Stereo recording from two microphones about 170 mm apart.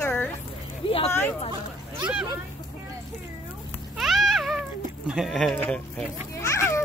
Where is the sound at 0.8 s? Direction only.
35° left (ahead or behind).